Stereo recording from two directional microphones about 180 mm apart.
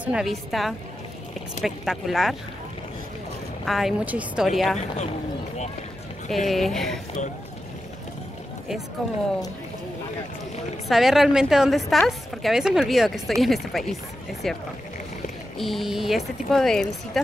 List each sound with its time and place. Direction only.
0.0 s a woman's voice: 5° right (ahead or behind)
3.6 s a woman's voice: centre (ahead or behind)
4.7 s a man's voice: 35° left (ahead or behind)
6.3 s a woman's voice: centre (ahead or behind)
10.9 s a woman's voice: centre (ahead or behind)